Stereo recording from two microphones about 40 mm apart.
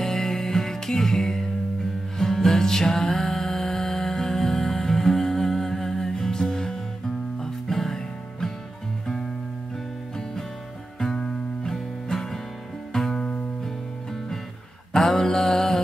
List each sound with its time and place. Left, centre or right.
0.0 s music: centre
11.0 s music: centre
13.1 s music: left
14.9 s mantra: centre